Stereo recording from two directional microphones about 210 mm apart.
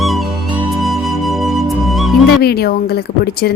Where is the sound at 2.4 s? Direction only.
50° left (ahead or behind).